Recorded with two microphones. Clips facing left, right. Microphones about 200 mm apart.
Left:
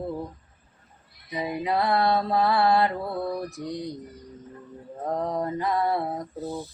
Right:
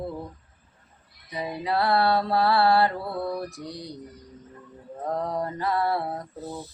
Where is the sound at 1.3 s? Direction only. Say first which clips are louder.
Left 1 dB; 15° left (ahead or behind).